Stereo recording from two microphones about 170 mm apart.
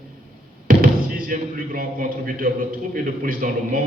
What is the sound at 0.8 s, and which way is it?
Speech, 60° right (ahead or behind).